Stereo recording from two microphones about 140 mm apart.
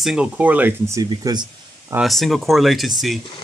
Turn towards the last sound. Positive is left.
turn(degrees=0)  # may be behind; listen again after turning